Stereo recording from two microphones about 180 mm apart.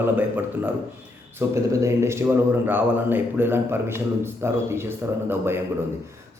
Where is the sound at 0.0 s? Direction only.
10° right (ahead or behind).